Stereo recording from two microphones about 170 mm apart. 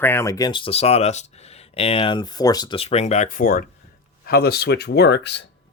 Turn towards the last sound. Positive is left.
turn(degrees=85)